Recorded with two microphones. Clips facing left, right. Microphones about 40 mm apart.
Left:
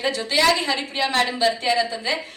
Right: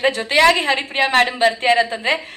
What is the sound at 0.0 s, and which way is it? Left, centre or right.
A woman's voice, right.